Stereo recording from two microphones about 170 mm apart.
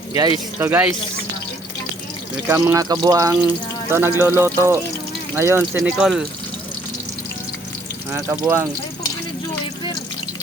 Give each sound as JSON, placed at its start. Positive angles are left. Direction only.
{"t": 0.2, "sound": "speech", "side_deg": -25}
{"t": 2.5, "sound": "speech", "side_deg": -15}
{"t": 8.1, "sound": "speech", "side_deg": -15}